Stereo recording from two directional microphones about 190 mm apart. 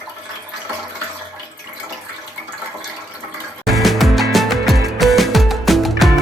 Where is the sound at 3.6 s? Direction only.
Centre (ahead or behind).